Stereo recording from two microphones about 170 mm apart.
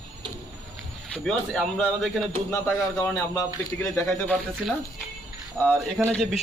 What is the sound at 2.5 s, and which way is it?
Speech, 15° left (ahead or behind).